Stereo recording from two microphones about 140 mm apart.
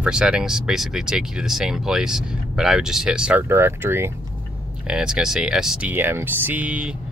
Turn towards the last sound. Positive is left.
turn(degrees=-10)  # may be behind; listen again after turning